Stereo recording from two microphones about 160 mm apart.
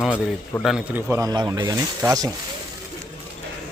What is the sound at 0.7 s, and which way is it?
Speech, 15° right (ahead or behind).